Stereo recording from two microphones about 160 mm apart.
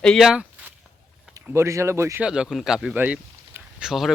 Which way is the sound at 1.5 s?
15° right (ahead or behind).